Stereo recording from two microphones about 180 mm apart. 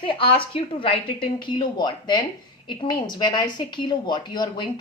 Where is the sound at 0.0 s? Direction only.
30° left (ahead or behind).